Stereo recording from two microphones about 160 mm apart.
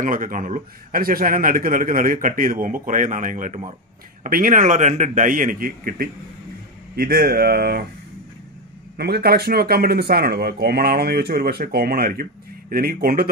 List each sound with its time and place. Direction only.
0.0 s a man's voice: 55° right (ahead or behind)
4.2 s a man's voice: 60° right (ahead or behind)
8.9 s speech: 85° right; by 13.3 s 65° right (ahead or behind)